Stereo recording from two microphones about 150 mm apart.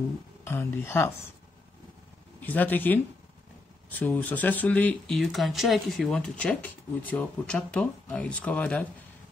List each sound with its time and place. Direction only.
0.5 s speech: 15° left (ahead or behind)
2.4 s speech: 10° left (ahead or behind)